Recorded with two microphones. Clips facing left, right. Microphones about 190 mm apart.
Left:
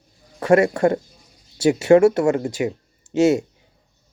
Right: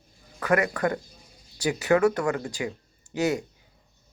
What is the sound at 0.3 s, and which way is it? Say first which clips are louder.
Speech: left 8 dB; 25° left (ahead or behind).